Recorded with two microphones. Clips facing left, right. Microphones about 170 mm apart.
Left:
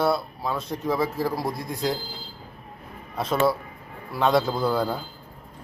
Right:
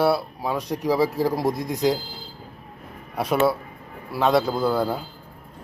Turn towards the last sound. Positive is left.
turn(degrees=-5)  # may be behind; listen again after turning